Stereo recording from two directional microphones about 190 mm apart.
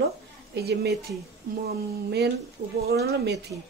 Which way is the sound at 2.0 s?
60° right (ahead or behind).